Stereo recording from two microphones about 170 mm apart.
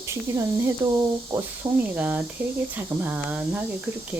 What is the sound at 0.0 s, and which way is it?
Speech, 15° right (ahead or behind).